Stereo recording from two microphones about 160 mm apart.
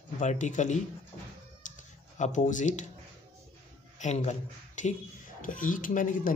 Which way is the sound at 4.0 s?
45° left (ahead or behind).